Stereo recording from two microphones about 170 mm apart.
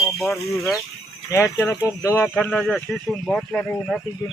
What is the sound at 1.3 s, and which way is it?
Speech, 15° left (ahead or behind).